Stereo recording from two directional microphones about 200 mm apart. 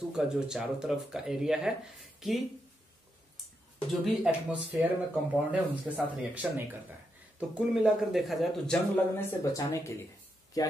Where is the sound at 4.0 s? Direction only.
5° right (ahead or behind).